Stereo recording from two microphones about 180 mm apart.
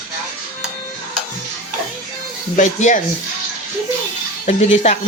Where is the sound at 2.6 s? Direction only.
45° left (ahead or behind).